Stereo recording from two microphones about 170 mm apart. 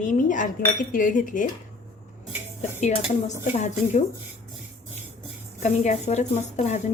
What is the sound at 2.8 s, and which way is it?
A woman's voice, 45° left (ahead or behind).